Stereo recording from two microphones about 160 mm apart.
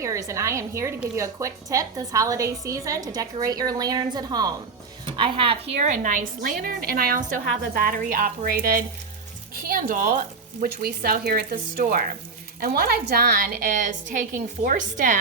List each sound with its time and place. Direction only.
0.0 s a woman's voice: 20° right (ahead or behind)
5.8 s a woman's voice: 55° right (ahead or behind)
10.6 s speech: 70° right (ahead or behind)
13.7 s a woman's voice: 50° right (ahead or behind)